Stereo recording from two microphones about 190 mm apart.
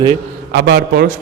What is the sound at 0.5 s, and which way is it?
Speech, 55° right (ahead or behind).